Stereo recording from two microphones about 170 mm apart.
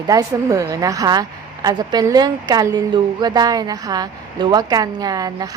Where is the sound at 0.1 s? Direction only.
20° right (ahead or behind).